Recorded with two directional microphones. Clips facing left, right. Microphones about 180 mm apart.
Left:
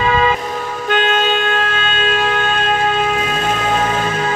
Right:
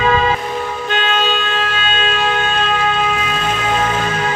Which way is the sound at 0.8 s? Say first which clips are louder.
Left 4 dB; 50° left (ahead or behind).